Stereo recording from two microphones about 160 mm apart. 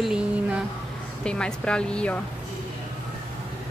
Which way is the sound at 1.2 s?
5° left (ahead or behind).